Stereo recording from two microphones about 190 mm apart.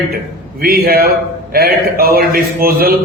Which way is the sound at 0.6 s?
50° right (ahead or behind).